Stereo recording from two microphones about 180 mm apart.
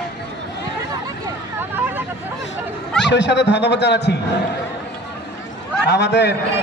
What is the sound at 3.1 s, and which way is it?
A man's voice, 75° left (ahead or behind).